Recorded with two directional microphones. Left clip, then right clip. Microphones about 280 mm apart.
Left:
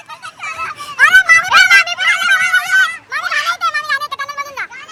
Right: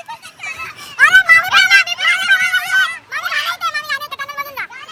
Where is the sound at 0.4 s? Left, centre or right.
Centre.